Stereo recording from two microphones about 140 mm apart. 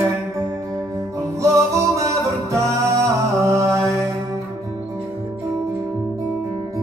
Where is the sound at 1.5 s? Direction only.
20° right (ahead or behind).